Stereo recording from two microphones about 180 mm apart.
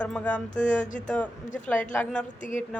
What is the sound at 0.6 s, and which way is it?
Speech, 45° left (ahead or behind).